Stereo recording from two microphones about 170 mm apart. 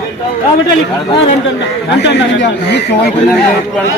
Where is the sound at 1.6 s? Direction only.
90° left.